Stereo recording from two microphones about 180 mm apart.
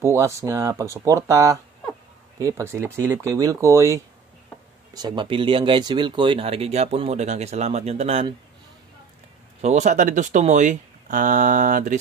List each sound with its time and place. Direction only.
0.0 s speech: 15° right (ahead or behind); by 8.4 s 35° right (ahead or behind)
9.6 s speech: 40° right (ahead or behind)